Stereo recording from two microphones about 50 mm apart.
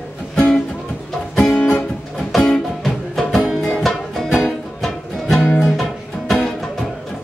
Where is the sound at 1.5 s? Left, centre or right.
Left.